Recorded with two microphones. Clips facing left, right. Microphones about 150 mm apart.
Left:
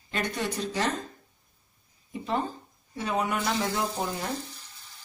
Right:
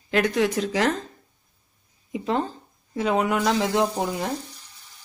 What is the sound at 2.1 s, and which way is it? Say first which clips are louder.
Speech: right 4 dB; 90° right.